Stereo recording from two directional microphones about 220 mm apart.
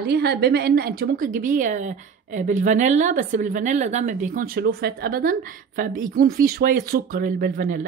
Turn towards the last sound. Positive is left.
turn(degrees=-40)  # may be behind; listen again after turning